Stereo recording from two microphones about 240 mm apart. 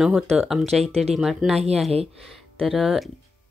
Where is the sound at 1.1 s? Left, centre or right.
Centre.